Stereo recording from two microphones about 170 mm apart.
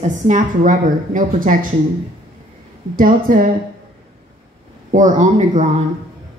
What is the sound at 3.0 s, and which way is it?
Speech, 55° right (ahead or behind).